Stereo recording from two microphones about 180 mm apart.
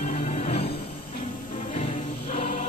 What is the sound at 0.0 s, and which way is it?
Music, 40° left (ahead or behind).